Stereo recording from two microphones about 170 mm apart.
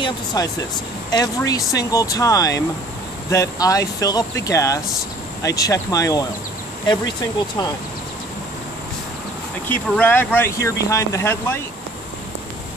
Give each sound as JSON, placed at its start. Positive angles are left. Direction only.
{"t": 0.0, "sound": "speech", "side_deg": 25}
{"t": 9.7, "sound": "speech", "side_deg": 10}